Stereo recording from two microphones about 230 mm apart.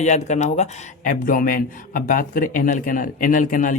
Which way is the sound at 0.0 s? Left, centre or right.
Left.